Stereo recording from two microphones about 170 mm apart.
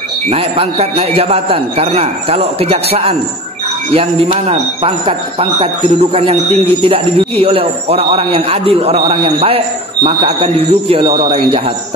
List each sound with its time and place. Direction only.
0.3 s speech: 35° right (ahead or behind)